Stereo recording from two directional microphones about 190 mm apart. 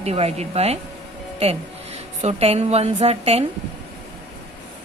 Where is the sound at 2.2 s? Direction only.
35° right (ahead or behind).